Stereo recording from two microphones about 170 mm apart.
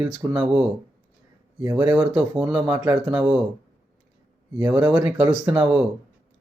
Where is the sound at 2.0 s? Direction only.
5° right (ahead or behind).